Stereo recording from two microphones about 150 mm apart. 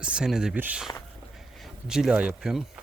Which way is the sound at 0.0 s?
5° right (ahead or behind).